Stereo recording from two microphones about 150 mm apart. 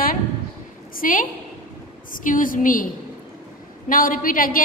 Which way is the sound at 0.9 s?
65° left (ahead or behind).